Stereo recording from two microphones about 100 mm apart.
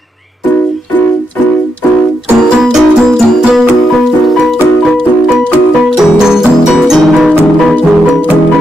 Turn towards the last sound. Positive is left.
turn(degrees=-5)  # may be behind; listen again after turning